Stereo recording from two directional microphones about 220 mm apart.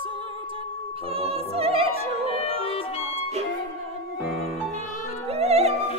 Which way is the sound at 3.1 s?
30° right (ahead or behind).